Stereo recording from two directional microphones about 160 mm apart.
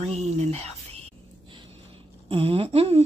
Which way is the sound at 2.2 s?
35° right (ahead or behind).